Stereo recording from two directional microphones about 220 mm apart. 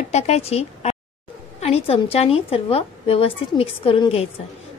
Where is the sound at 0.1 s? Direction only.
30° left (ahead or behind).